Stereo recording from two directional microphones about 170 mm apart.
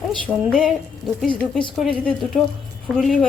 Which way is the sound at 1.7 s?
Centre (ahead or behind).